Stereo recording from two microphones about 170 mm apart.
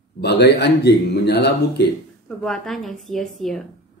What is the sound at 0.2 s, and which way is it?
Speech, 80° left.